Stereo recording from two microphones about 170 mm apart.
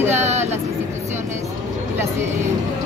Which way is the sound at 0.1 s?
40° right (ahead or behind).